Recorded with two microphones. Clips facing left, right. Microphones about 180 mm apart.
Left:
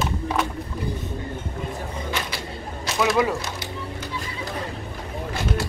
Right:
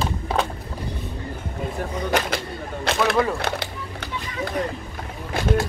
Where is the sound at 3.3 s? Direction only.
60° right (ahead or behind).